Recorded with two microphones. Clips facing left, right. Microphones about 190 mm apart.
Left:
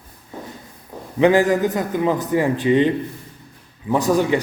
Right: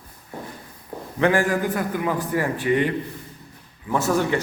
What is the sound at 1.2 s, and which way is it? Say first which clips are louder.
A man's voice: left 5 dB; 20° left (ahead or behind).